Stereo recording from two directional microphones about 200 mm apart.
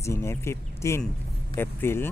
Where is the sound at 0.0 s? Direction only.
15° left (ahead or behind).